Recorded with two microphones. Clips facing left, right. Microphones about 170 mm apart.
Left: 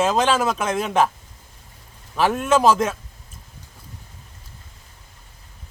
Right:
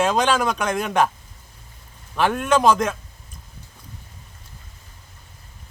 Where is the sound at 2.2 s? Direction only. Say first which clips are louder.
Left 1 dB; 5° left (ahead or behind).